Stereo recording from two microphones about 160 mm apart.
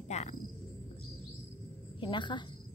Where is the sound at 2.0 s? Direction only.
30° left (ahead or behind).